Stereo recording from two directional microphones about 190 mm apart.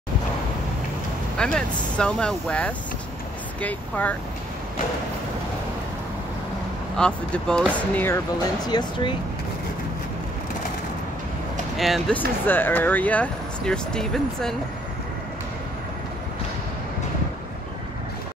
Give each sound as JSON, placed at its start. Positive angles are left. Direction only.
{"t": 1.4, "sound": "speech", "side_deg": 5}
{"t": 7.0, "sound": "speech", "side_deg": 5}
{"t": 8.6, "sound": "speech", "side_deg": 20}
{"t": 11.7, "sound": "speech", "side_deg": 0}